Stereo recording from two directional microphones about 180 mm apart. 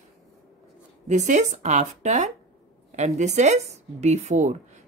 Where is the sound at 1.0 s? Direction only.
40° right (ahead or behind).